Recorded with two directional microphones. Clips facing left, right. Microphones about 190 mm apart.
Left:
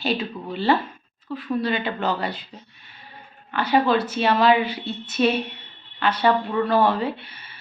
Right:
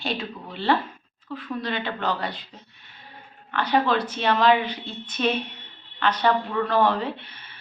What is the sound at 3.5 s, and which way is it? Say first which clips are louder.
A woman's voice: left 3 dB; 5° left (ahead or behind).